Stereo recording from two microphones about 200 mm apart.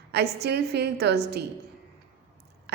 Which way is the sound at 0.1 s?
55° right (ahead or behind).